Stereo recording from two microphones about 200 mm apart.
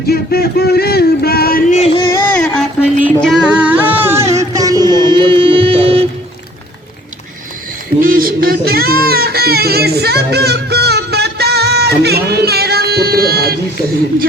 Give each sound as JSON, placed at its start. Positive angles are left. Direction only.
{"t": 0.1, "sound": "a sound", "side_deg": 50}
{"t": 2.0, "sound": "music", "side_deg": 15}
{"t": 8.0, "sound": "music", "side_deg": -45}